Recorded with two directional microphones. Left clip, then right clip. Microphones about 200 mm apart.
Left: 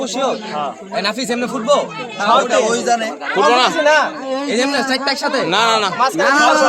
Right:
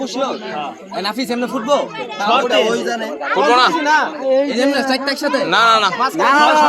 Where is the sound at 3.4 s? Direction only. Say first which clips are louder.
Left 1 dB; 25° left (ahead or behind).